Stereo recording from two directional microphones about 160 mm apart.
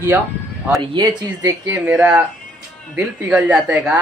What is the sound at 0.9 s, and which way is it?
Speech, 25° right (ahead or behind).